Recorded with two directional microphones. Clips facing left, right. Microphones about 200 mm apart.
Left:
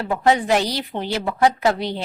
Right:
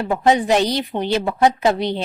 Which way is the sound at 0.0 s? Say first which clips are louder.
Right 2 dB; 20° right (ahead or behind).